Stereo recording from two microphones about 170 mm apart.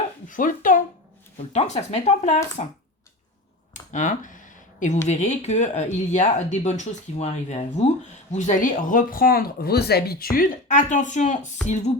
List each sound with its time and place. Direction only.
0.3 s speech: 50° left (ahead or behind)
1.5 s speech: 40° left (ahead or behind)
3.9 s a sound: 45° left (ahead or behind)
5.0 s speech: 40° left (ahead or behind)